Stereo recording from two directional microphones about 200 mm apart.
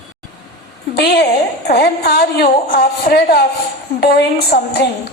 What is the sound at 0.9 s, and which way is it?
A woman's voice, 50° left (ahead or behind).